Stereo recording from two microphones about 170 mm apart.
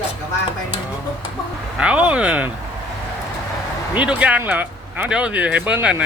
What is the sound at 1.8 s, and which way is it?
Speech, 5° right (ahead or behind).